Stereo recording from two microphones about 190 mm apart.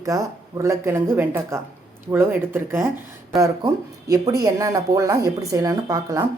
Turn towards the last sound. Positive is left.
turn(degrees=-15)  # may be behind; listen again after turning